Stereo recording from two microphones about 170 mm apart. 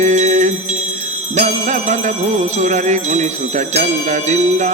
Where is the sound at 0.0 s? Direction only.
45° right (ahead or behind).